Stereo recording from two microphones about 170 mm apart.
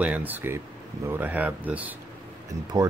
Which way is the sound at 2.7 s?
20° right (ahead or behind).